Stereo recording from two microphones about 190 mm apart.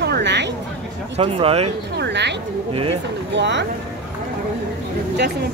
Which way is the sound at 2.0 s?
65° right (ahead or behind).